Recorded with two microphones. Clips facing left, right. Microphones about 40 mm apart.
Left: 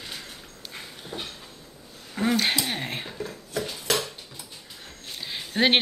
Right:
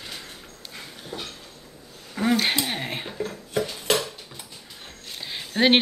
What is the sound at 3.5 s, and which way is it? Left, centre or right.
Cutlery, right.